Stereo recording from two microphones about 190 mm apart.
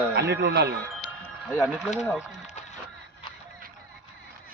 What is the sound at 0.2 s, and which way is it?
Speech, 65° right (ahead or behind).